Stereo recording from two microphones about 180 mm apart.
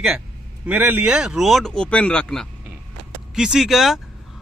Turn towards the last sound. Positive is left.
turn(degrees=0)  # may be behind; listen again after turning